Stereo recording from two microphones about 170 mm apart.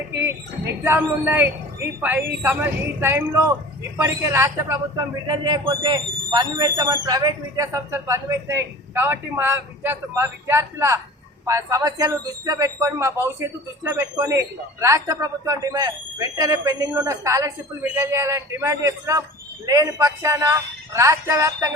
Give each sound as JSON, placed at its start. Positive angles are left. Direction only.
{"t": 0.9, "sound": "a man's voice", "side_deg": -10}